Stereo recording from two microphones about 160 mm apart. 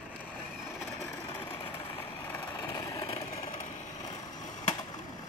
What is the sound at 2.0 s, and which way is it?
Vehicle, 10° left (ahead or behind).